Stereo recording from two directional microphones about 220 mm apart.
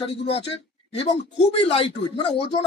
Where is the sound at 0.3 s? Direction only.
25° left (ahead or behind).